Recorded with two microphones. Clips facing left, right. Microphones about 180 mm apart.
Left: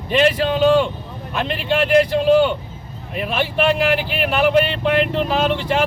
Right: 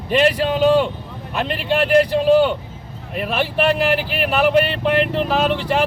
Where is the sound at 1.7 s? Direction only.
40° right (ahead or behind).